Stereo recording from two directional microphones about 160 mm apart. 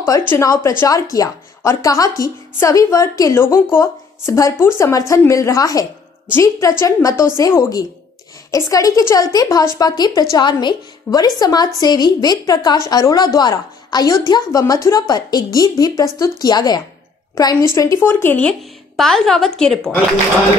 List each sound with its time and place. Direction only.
0.3 s a woman's voice: 20° left (ahead or behind)